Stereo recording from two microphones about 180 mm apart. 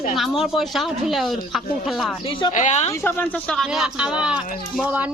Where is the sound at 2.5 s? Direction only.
40° left (ahead or behind).